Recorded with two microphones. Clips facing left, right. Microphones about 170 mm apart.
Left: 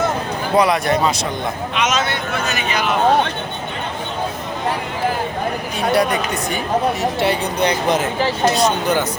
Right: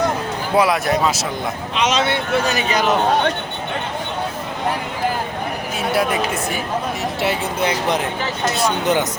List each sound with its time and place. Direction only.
0.5 s speech: 5° right (ahead or behind)
1.7 s speech: 30° right (ahead or behind)
5.9 s speech: 5° right (ahead or behind)
8.6 s speech: 20° right (ahead or behind)